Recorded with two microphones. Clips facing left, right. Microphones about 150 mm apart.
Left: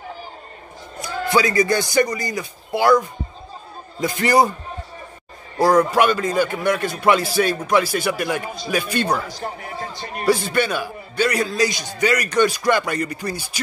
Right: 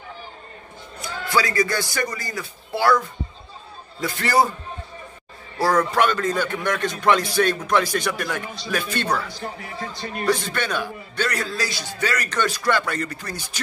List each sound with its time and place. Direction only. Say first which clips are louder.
1.3 s a man's voice: left 4 dB; 20° left (ahead or behind)
4.0 s a man's voice: left 3 dB; 15° left (ahead or behind)
5.6 s a man's voice: left 4 dB; 15° left (ahead or behind)
9.3 s speech: left 3 dB; 35° left (ahead or behind)
10.2 s a man's voice: left 4 dB; 10° left (ahead or behind)